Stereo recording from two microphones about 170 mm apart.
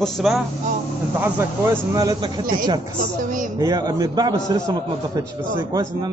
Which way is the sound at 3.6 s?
20° right (ahead or behind).